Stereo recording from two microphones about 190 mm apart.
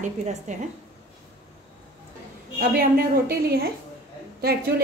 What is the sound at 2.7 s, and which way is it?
A woman's voice, 55° right (ahead or behind).